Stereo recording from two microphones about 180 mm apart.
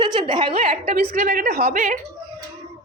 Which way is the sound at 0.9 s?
55° right (ahead or behind).